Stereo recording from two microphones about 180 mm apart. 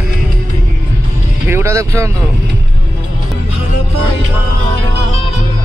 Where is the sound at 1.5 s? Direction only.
15° right (ahead or behind).